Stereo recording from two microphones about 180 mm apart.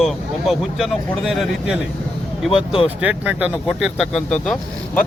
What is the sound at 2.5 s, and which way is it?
Speech, 30° left (ahead or behind).